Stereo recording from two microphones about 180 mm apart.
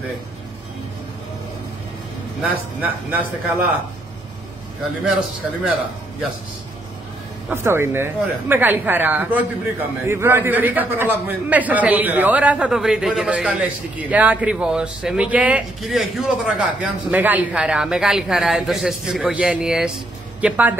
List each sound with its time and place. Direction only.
2.8 s speech: 10° right (ahead or behind)
7.4 s speech: 15° right (ahead or behind)